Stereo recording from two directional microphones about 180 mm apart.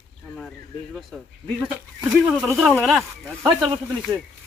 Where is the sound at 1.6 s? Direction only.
5° right (ahead or behind).